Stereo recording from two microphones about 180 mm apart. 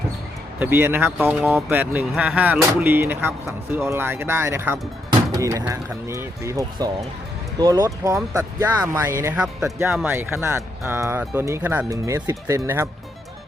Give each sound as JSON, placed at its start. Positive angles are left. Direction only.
{"t": 0.6, "sound": "speech", "side_deg": -10}